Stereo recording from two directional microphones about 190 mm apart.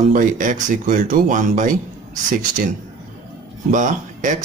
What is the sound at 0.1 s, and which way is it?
Speech, 45° right (ahead or behind).